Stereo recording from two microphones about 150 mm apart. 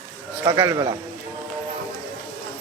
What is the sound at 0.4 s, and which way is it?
Speech, 25° right (ahead or behind).